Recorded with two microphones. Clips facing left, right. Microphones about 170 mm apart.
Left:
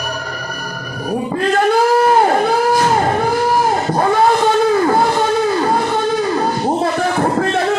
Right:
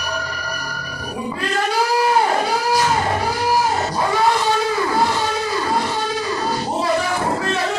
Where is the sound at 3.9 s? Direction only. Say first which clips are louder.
Left 7 dB; 50° left (ahead or behind).